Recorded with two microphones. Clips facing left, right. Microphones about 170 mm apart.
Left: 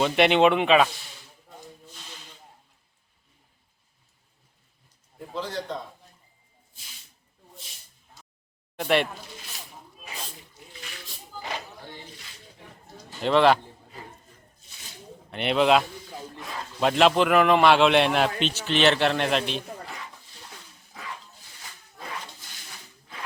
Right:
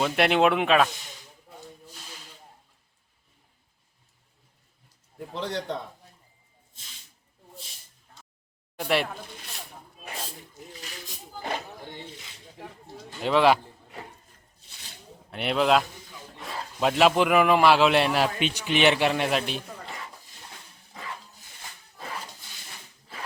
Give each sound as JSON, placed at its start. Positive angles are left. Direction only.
{"t": 0.0, "sound": "speech", "side_deg": 0}
{"t": 5.3, "sound": "a man's voice", "side_deg": -70}
{"t": 8.7, "sound": "speech", "side_deg": -5}
{"t": 10.0, "sound": "snake", "side_deg": -55}
{"t": 13.2, "sound": "a man's voice", "side_deg": -5}
{"t": 15.3, "sound": "a man's voice", "side_deg": -5}